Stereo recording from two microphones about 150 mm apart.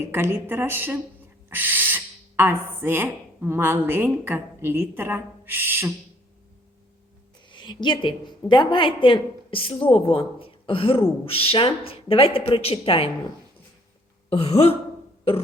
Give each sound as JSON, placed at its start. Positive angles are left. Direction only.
{"t": 0.1, "sound": "a woman's voice", "side_deg": -15}
{"t": 7.5, "sound": "a woman's voice", "side_deg": 30}
{"t": 14.3, "sound": "a woman's voice", "side_deg": 40}